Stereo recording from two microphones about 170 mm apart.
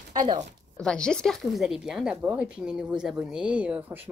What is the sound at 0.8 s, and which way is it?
Speech, 5° left (ahead or behind).